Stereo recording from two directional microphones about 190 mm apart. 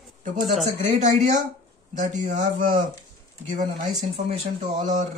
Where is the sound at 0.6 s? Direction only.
40° right (ahead or behind).